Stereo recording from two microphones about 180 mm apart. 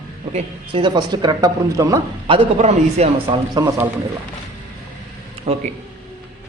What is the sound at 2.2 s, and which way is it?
A man's voice, 35° right (ahead or behind).